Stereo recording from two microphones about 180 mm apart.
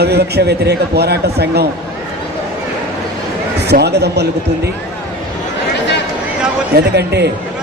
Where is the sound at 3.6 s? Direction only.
65° right (ahead or behind).